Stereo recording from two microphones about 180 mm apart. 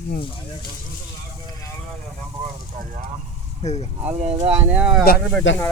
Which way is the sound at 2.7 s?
45° right (ahead or behind).